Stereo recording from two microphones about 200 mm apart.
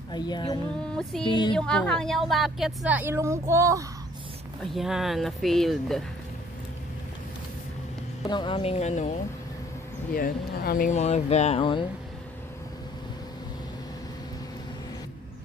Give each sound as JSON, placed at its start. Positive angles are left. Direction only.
{"t": 0.1, "sound": "speech", "side_deg": 20}
{"t": 1.5, "sound": "a woman's voice", "side_deg": 5}
{"t": 4.7, "sound": "a woman's voice", "side_deg": 0}
{"t": 8.2, "sound": "speech", "side_deg": 20}
{"t": 10.1, "sound": "speech", "side_deg": 45}